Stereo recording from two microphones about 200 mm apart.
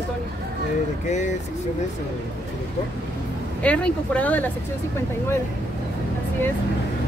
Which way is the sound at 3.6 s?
5° left (ahead or behind).